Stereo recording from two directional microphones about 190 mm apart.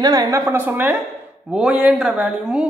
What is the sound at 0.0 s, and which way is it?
A woman's voice, 20° right (ahead or behind).